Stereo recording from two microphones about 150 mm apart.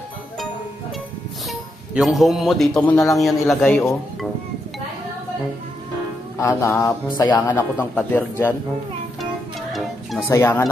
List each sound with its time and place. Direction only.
1.5 s a man's voice: centre (ahead or behind)
6.3 s speech: 20° left (ahead or behind)
9.2 s music: centre (ahead or behind)
10.2 s speech: 15° left (ahead or behind)